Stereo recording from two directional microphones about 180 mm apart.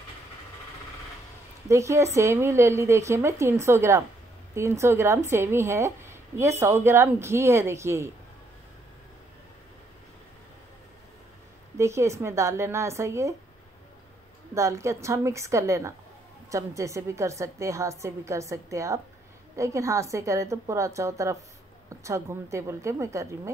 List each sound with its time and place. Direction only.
1.7 s a woman's voice: 15° right (ahead or behind)
11.8 s a woman's voice: 15° right (ahead or behind)
14.5 s a woman's voice: 15° right (ahead or behind)